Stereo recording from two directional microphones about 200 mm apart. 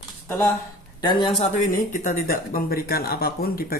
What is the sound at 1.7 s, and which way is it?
Speech, 45° left (ahead or behind).